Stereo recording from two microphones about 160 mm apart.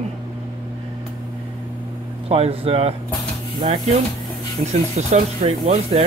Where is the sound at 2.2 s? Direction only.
35° right (ahead or behind).